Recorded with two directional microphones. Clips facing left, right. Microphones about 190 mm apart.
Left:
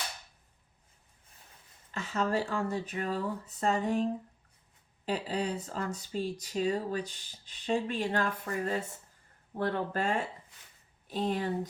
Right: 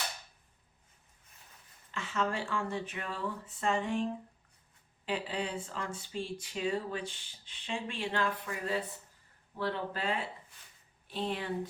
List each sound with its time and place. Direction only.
1.9 s speech: 40° left (ahead or behind)